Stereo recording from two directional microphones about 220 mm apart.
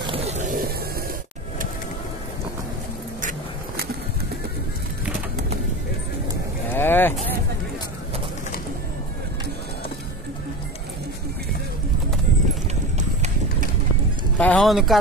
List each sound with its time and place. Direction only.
0.0 s skateboard: 25° right (ahead or behind)
3.2 s vehicle: 40° right (ahead or behind)
6.7 s vehicle: 10° left (ahead or behind)
14.4 s music: 5° left (ahead or behind)